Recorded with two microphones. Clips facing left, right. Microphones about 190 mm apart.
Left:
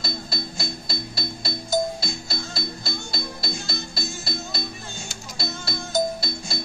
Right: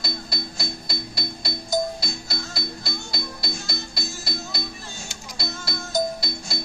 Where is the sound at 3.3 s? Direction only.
25° left (ahead or behind).